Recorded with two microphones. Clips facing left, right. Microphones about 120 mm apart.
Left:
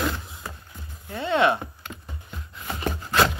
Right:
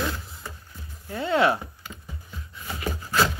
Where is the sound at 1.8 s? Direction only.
60° left (ahead or behind).